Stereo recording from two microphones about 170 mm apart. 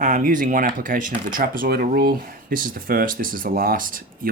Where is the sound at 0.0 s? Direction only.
50° right (ahead or behind).